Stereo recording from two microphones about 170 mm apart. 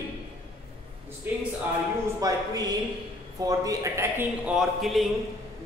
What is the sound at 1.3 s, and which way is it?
Speech, 10° right (ahead or behind).